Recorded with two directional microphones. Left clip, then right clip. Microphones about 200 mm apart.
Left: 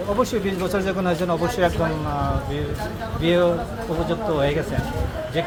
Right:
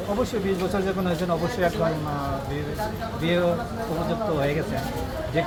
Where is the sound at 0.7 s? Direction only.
55° left (ahead or behind).